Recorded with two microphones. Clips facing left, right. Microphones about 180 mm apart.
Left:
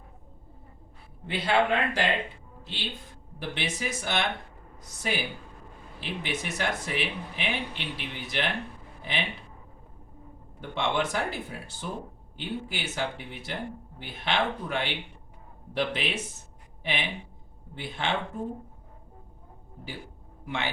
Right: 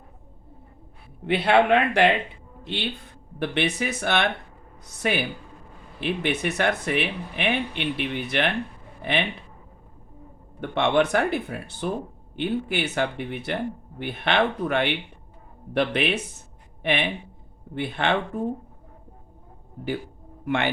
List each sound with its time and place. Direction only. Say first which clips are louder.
1.3 s speech: right 6 dB; 65° right (ahead or behind)
9.0 s a sound: right 8 dB; 60° right (ahead or behind)
10.6 s speech: right 7 dB; 60° right (ahead or behind)
20.4 s speech: right 8 dB; 60° right (ahead or behind)